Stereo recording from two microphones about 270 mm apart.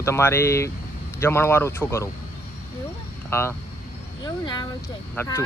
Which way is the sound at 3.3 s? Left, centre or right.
Centre.